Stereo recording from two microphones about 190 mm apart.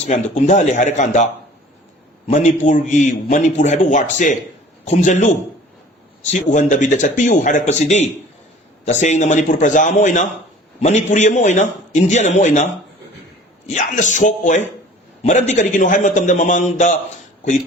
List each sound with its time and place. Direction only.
0.0 s a man's voice: 35° left (ahead or behind)
6.4 s a man's voice: 40° left (ahead or behind)
13.7 s a man's voice: 40° left (ahead or behind)